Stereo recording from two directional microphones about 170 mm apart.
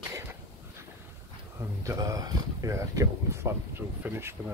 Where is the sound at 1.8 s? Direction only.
20° right (ahead or behind).